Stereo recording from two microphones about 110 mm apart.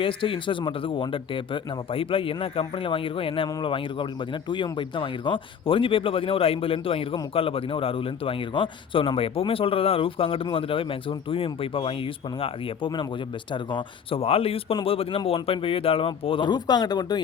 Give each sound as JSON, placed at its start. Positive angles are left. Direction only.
{"t": 0.0, "sound": "speech", "side_deg": 50}